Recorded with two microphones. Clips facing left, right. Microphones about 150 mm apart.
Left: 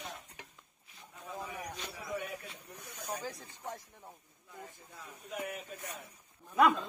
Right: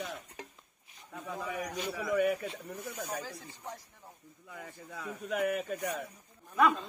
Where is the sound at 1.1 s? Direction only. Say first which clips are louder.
Right 5 dB; 90° right.